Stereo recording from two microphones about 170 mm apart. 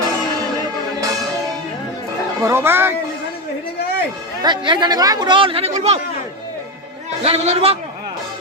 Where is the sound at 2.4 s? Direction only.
15° right (ahead or behind).